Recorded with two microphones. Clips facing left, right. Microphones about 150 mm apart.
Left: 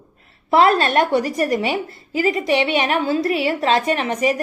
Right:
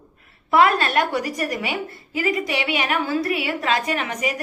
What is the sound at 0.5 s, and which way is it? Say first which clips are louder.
A woman's voice: left 3 dB; 30° left (ahead or behind).